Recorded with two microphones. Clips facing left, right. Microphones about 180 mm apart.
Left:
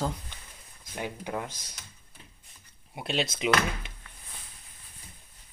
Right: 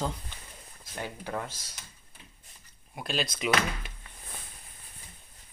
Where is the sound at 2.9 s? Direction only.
25° left (ahead or behind).